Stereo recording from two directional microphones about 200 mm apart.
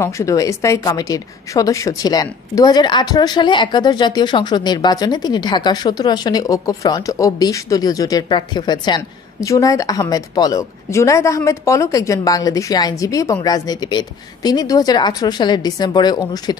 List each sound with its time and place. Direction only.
0.0 s a woman's voice: 15° left (ahead or behind)